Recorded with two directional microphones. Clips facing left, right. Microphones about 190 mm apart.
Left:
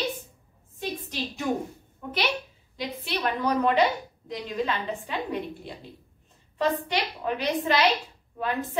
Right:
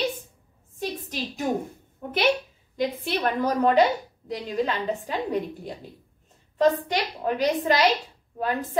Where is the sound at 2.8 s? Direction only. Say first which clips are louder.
Right 5 dB; 45° right (ahead or behind).